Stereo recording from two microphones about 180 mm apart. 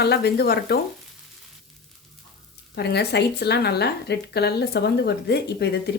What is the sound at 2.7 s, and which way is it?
Speech, 65° left (ahead or behind).